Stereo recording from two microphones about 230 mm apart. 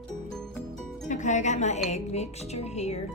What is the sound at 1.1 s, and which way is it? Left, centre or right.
Speech, left.